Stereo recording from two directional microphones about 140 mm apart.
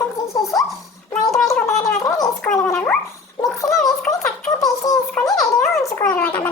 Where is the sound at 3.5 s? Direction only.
25° left (ahead or behind).